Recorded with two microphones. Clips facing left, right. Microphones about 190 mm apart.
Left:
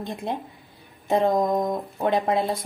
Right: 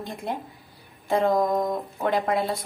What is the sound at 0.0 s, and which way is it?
Speech, 20° left (ahead or behind).